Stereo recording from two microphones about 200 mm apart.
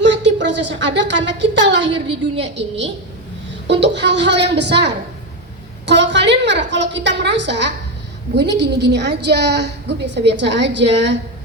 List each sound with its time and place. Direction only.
0.0 s a woman's voice: 60° right (ahead or behind)